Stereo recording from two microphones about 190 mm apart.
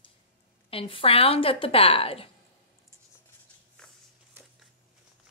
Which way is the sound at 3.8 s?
5° left (ahead or behind).